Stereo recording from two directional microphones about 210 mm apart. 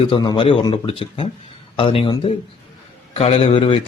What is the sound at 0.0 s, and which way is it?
Speech, 25° left (ahead or behind).